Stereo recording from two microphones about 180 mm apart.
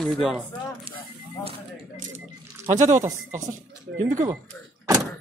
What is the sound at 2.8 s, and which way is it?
Speech, 20° right (ahead or behind).